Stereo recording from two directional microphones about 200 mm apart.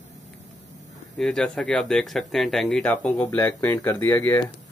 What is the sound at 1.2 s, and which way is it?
Speech, centre (ahead or behind).